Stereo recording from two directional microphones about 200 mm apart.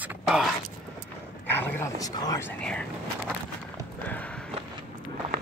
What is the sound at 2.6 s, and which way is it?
Speech, 5° left (ahead or behind).